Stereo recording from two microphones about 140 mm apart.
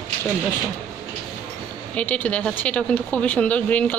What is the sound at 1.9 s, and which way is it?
Speech, 10° left (ahead or behind).